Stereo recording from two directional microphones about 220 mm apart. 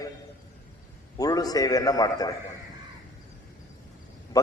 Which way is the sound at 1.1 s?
15° left (ahead or behind).